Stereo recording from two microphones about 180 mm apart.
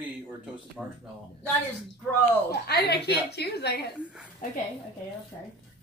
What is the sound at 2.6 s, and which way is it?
A woman's voice, 65° left (ahead or behind).